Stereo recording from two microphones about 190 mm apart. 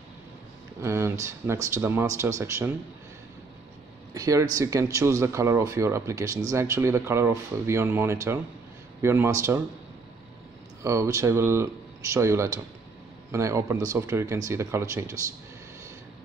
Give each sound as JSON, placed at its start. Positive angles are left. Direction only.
{"t": 0.7, "sound": "speech", "side_deg": -15}
{"t": 4.1, "sound": "speech", "side_deg": -20}
{"t": 10.8, "sound": "speech", "side_deg": -15}